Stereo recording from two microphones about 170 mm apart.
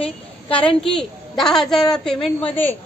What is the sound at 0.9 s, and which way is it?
A woman's voice, 5° left (ahead or behind).